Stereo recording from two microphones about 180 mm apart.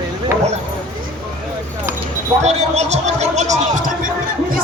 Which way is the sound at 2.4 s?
40° right (ahead or behind).